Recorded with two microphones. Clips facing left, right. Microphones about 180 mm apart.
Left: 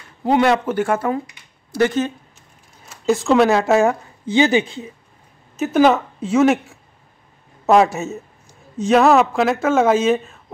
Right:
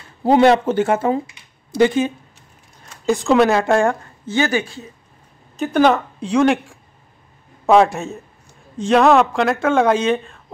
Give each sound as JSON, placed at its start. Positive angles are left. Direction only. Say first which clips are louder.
{"t": 0.2, "sound": "speech", "louder": "right 3 dB", "side_deg": -30}
{"t": 2.8, "sound": "speech", "louder": "left 1 dB", "side_deg": 5}
{"t": 4.3, "sound": "speech", "louder": "left 4 dB", "side_deg": 20}
{"t": 5.6, "sound": "speech", "louder": "left 1 dB", "side_deg": 5}